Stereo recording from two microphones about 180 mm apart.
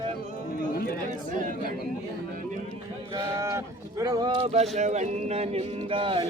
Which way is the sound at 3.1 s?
15° right (ahead or behind).